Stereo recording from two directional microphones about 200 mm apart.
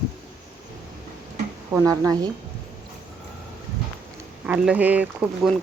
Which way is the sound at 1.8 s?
15° right (ahead or behind).